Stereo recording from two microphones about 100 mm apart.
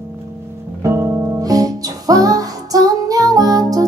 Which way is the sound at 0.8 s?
30° right (ahead or behind).